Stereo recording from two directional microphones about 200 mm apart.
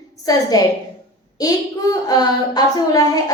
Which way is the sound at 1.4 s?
20° left (ahead or behind).